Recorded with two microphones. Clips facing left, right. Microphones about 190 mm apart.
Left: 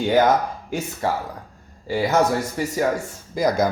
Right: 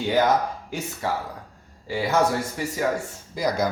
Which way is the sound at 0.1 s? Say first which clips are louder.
Left 3 dB; 50° left (ahead or behind).